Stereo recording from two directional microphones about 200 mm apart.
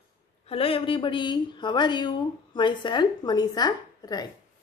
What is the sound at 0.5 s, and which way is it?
Speech, 30° left (ahead or behind).